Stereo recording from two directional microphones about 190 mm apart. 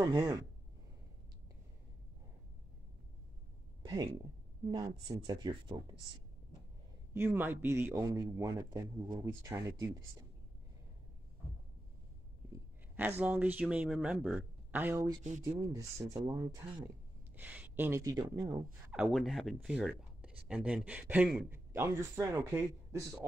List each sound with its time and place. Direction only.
0.0 s speech: 15° right (ahead or behind)
3.8 s speech: 20° right (ahead or behind)
7.2 s speech: 10° right (ahead or behind)
12.5 s a sound: 10° right (ahead or behind)
13.2 s speech: 10° right (ahead or behind)
17.4 s speech: 10° right (ahead or behind)
18.9 s speech: centre (ahead or behind)